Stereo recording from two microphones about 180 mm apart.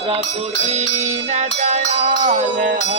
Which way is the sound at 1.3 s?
35° right (ahead or behind).